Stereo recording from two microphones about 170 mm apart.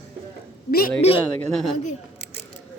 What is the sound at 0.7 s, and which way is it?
Speech, 65° left (ahead or behind).